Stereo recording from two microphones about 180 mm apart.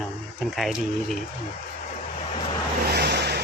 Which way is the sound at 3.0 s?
65° right (ahead or behind).